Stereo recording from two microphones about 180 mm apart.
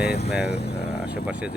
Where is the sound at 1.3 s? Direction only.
10° right (ahead or behind).